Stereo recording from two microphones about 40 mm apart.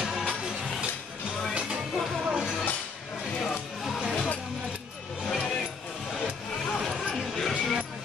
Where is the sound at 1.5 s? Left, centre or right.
Right.